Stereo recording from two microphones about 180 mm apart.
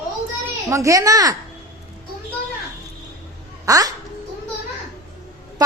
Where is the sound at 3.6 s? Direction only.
20° right (ahead or behind).